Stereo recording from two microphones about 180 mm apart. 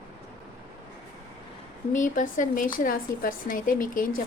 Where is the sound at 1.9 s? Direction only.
45° left (ahead or behind).